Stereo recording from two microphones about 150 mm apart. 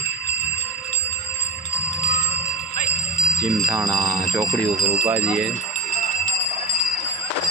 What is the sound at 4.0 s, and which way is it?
Speech, 25° right (ahead or behind).